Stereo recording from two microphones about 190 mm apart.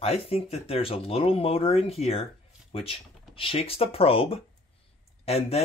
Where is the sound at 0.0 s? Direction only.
30° left (ahead or behind).